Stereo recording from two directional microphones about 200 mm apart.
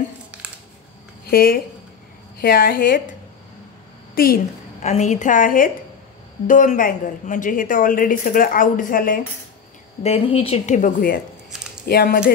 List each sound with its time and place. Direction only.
1.2 s a woman's voice: 45° left (ahead or behind)
4.1 s a woman's voice: 45° left (ahead or behind)
4.8 s a woman's voice: 35° left (ahead or behind)
10.0 s a woman's voice: 30° left (ahead or behind); by 12.3 s 50° left (ahead or behind)